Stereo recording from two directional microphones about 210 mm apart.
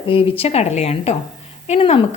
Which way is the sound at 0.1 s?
25° left (ahead or behind).